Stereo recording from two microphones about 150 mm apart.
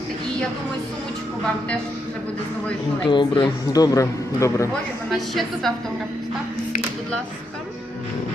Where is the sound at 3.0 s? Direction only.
30° left (ahead or behind).